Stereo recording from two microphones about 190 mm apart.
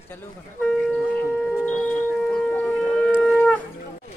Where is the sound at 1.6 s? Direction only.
5° left (ahead or behind).